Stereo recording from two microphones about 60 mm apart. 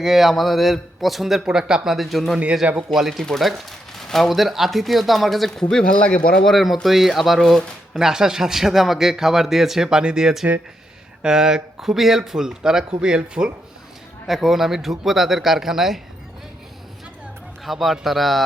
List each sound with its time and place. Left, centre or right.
0.0 s a man's voice: centre
5.6 s speech: centre
6.4 s a man's voice: centre
7.9 s speech: centre
14.3 s a man's voice: centre
17.7 s a man's voice: centre